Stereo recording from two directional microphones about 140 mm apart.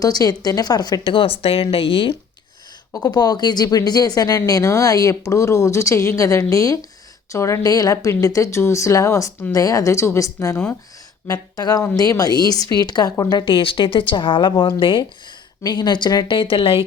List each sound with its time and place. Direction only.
0.0 s speech: 25° left (ahead or behind)
2.9 s speech: 30° left (ahead or behind)